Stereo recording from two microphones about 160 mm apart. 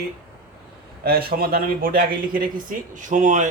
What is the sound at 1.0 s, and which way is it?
Speech, 70° right (ahead or behind).